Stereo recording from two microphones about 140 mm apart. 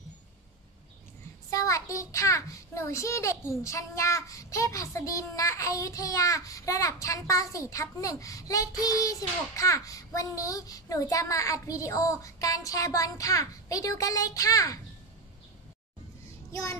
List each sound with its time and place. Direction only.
1.5 s a child's voice: 25° left (ahead or behind)